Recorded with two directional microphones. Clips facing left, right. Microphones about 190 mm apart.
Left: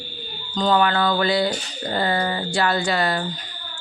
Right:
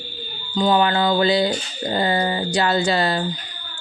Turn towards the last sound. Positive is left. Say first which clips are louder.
# right 2 dB
turn(degrees=-25)  # may be behind; listen again after turning